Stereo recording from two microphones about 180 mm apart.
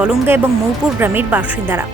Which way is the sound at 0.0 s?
10° right (ahead or behind).